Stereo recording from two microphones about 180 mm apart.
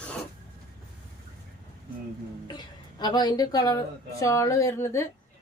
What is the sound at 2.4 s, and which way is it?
A woman's voice, 25° left (ahead or behind).